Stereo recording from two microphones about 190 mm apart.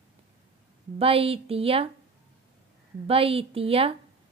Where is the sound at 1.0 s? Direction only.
30° right (ahead or behind).